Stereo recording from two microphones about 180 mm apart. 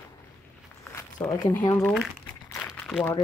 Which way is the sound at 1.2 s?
20° left (ahead or behind).